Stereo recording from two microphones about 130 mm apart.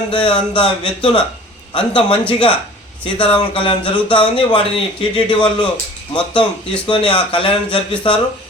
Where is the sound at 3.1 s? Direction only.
40° left (ahead or behind).